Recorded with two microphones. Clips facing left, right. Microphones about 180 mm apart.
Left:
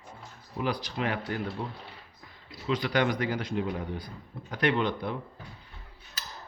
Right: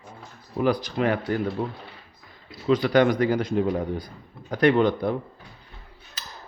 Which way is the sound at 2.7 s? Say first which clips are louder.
Right 8 dB; 45° right (ahead or behind).